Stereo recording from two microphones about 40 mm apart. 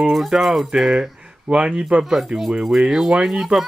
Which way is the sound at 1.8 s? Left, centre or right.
Right.